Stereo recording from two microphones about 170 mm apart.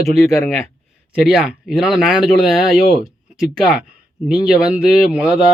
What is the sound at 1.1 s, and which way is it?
Speech, 5° right (ahead or behind).